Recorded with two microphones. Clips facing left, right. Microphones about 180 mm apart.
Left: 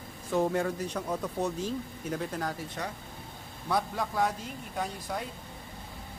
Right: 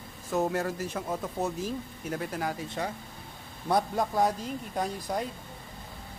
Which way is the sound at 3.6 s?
40° right (ahead or behind).